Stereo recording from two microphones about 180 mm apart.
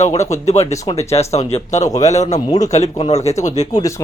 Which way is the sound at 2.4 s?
20° left (ahead or behind).